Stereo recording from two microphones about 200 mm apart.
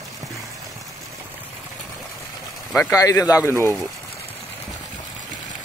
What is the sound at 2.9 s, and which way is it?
Speech, 15° left (ahead or behind).